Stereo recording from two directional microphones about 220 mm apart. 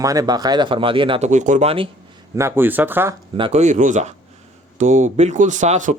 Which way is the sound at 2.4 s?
10° right (ahead or behind).